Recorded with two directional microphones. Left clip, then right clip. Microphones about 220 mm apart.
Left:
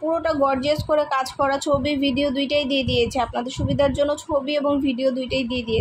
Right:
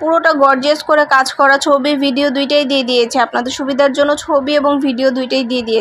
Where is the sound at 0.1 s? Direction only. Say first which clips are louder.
Right 11 dB; 20° right (ahead or behind).